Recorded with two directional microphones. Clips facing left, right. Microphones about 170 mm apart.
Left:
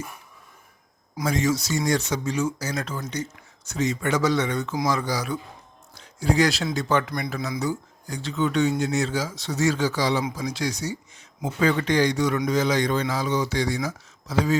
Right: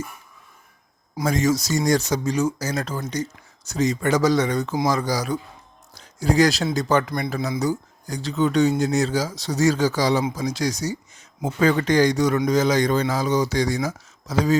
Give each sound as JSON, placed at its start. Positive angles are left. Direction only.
{"t": 1.2, "sound": "speech", "side_deg": -45}
{"t": 5.9, "sound": "a sound", "side_deg": -40}
{"t": 6.7, "sound": "speech", "side_deg": -40}
{"t": 7.1, "sound": "a man's voice", "side_deg": -30}